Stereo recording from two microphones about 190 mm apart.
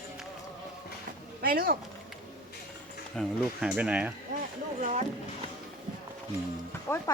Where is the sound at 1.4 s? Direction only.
50° right (ahead or behind).